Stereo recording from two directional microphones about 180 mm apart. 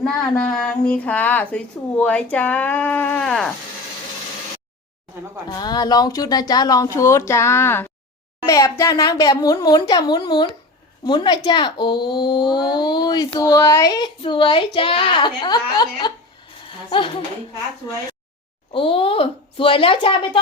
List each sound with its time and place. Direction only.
0.0 s a woman's voice: 5° left (ahead or behind)
5.5 s speech: 25° left (ahead or behind)
18.7 s speech: 30° left (ahead or behind)